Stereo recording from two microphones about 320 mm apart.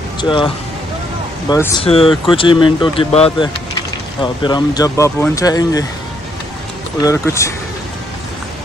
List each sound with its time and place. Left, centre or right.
0.2 s speech: centre
1.5 s speech: centre
7.0 s speech: centre